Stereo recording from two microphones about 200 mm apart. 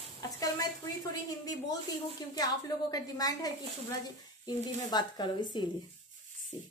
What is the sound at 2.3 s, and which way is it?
A woman's voice, 20° left (ahead or behind).